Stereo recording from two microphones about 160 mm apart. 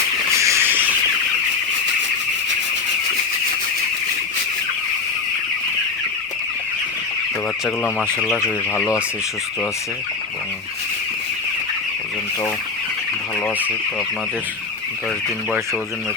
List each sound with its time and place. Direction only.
0.3 s a sound: 15° right (ahead or behind)
8.0 s speech: 5° right (ahead or behind)
8.4 s speech: 10° left (ahead or behind)